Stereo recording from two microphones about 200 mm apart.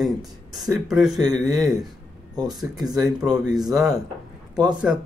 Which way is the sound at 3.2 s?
20° right (ahead or behind).